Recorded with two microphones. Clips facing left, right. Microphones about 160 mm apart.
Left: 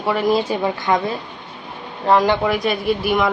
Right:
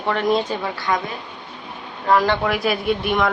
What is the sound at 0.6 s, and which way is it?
Speech, 20° left (ahead or behind).